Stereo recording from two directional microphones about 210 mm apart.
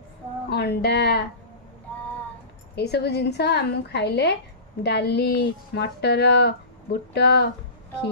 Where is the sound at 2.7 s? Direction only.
50° left (ahead or behind).